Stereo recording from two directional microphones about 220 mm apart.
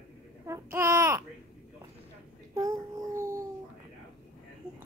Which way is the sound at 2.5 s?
15° right (ahead or behind).